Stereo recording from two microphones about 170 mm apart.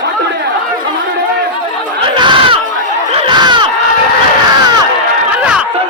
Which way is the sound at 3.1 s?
25° right (ahead or behind).